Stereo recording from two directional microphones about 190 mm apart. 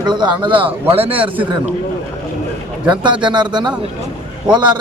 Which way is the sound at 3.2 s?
25° right (ahead or behind).